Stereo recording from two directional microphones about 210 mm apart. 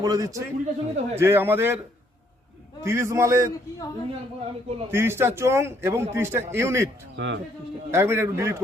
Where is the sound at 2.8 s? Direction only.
15° right (ahead or behind).